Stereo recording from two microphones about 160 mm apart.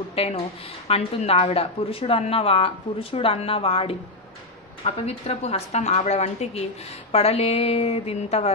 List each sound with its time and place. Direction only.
0.1 s a woman's voice: 40° left (ahead or behind)